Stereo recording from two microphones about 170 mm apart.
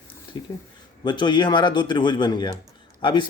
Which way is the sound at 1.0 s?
25° left (ahead or behind).